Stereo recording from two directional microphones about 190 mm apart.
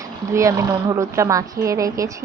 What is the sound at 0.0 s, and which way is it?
Speech, 15° right (ahead or behind).